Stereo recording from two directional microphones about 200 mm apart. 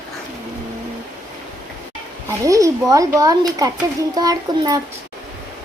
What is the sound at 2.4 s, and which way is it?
A child's voice, 15° right (ahead or behind).